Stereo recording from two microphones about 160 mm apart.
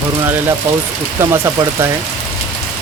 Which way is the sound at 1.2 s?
20° right (ahead or behind).